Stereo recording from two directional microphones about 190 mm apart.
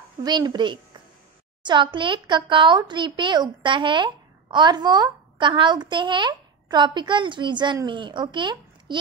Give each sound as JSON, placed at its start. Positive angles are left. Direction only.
{"t": 0.2, "sound": "speech", "side_deg": -20}